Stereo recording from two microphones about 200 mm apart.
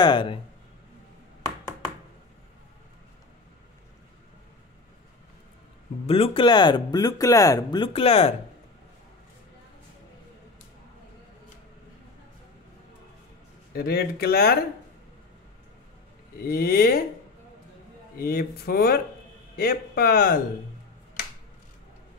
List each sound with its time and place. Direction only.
0.0 s speech: 25° left (ahead or behind)
6.0 s speech: 30° left (ahead or behind)
13.7 s speech: 50° left (ahead or behind)
16.3 s speech: 50° left (ahead or behind)
18.1 s speech: 50° left (ahead or behind)